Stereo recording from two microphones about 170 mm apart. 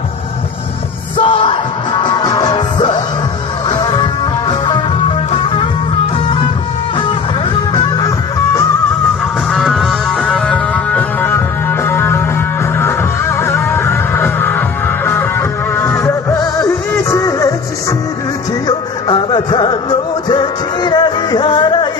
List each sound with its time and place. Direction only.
1.1 s music: 30° left (ahead or behind)
9.5 s music: centre (ahead or behind); by 17.6 s 20° left (ahead or behind)
18.7 s music: 25° left (ahead or behind)